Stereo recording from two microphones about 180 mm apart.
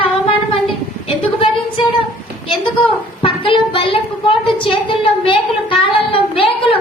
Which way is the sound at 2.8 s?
30° left (ahead or behind).